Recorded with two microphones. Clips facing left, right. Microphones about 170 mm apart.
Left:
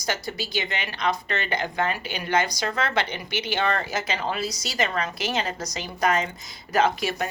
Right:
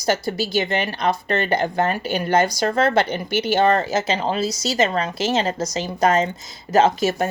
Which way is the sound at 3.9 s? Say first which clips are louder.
Right 6 dB; 25° right (ahead or behind).